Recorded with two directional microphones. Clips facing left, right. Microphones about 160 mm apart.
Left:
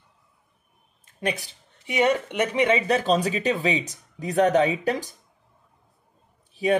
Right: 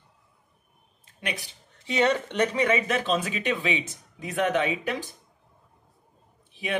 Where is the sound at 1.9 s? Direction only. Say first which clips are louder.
Left 2 dB; 15° left (ahead or behind).